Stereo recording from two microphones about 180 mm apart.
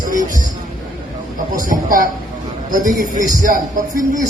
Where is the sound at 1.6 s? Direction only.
50° right (ahead or behind).